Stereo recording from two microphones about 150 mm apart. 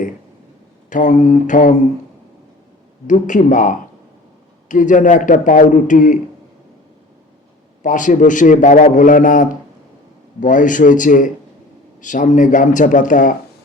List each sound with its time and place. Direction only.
0.9 s a man's voice: 55° left (ahead or behind)
3.1 s a man's voice: 55° left (ahead or behind)
7.8 s a man's voice: 60° left (ahead or behind)